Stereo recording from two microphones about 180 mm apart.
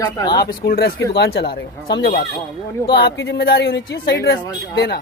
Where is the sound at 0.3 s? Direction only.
55° left (ahead or behind).